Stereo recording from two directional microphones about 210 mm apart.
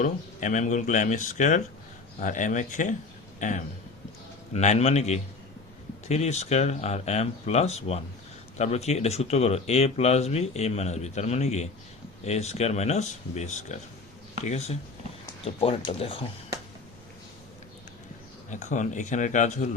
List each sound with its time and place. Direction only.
0.0 s speech: 35° left (ahead or behind)
18.5 s speech: 35° left (ahead or behind)